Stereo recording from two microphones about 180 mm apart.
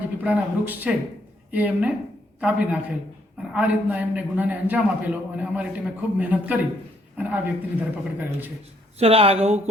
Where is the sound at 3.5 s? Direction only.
10° right (ahead or behind).